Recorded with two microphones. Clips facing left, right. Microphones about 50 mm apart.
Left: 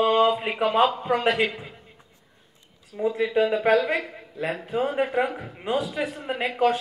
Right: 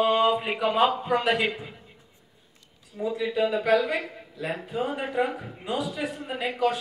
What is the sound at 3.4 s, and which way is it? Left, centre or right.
Male singing, left.